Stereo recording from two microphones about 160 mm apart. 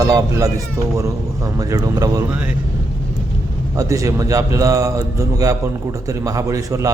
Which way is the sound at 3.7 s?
20° right (ahead or behind).